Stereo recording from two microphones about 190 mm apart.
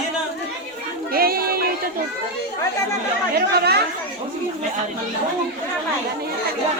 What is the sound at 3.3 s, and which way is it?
Speech, 55° right (ahead or behind).